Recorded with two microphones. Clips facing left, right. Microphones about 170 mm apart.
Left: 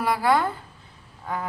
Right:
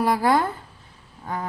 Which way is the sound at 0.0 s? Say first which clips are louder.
Right 2 dB; 40° right (ahead or behind).